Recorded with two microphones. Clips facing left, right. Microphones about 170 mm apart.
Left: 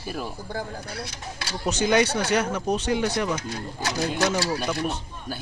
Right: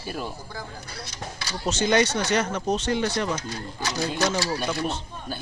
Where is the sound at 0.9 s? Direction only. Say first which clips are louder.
Left 2 dB; 60° left (ahead or behind).